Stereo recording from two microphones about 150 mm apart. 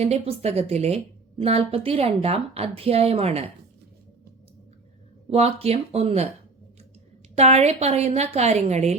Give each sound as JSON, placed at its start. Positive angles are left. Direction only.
{"t": 0.0, "sound": "a woman's voice", "side_deg": -45}
{"t": 5.3, "sound": "a woman's voice", "side_deg": -45}
{"t": 7.3, "sound": "a woman's voice", "side_deg": -45}